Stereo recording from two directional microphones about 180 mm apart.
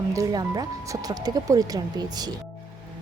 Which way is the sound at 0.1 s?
20° right (ahead or behind).